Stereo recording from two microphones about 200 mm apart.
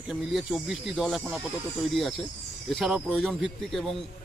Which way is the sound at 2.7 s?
Centre (ahead or behind).